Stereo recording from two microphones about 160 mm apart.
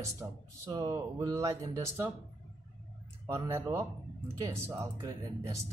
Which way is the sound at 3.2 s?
20° right (ahead or behind).